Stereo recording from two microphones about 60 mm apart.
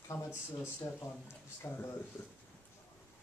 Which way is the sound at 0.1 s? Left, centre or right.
Left.